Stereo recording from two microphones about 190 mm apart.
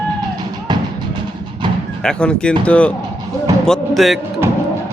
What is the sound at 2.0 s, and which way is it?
Speech, 5° left (ahead or behind).